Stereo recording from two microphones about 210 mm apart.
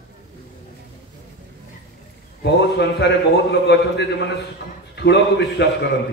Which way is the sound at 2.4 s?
55° left (ahead or behind).